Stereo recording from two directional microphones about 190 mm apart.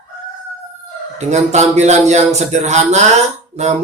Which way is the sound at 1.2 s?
35° right (ahead or behind).